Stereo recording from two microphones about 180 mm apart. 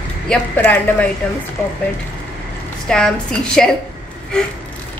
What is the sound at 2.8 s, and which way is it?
Speech, 5° left (ahead or behind).